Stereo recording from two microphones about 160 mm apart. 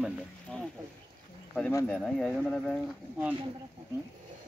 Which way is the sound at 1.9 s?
5° left (ahead or behind).